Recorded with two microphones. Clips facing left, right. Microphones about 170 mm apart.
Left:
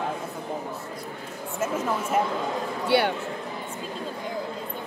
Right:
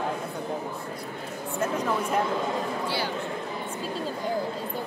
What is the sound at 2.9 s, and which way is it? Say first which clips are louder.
Speech: left 8 dB; 65° left (ahead or behind).